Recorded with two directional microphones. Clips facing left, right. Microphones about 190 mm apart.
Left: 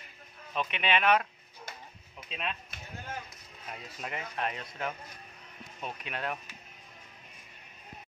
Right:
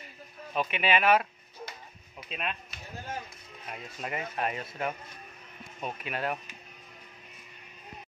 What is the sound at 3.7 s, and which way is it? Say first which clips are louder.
Speech: right 3 dB; 5° right (ahead or behind).